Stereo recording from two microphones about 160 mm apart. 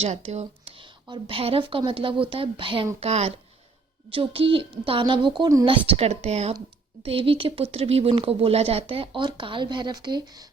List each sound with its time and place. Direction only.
0.0 s speech: 40° right (ahead or behind)
1.0 s speech: 30° right (ahead or behind)